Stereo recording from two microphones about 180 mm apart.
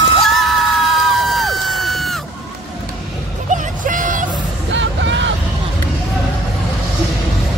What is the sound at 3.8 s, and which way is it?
Vehicle, 45° right (ahead or behind).